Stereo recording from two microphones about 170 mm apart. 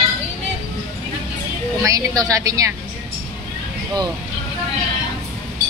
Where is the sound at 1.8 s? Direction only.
20° right (ahead or behind).